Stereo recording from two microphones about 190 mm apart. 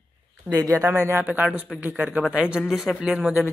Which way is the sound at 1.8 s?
10° right (ahead or behind).